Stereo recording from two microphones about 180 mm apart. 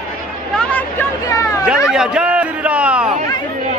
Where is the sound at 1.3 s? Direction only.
15° left (ahead or behind).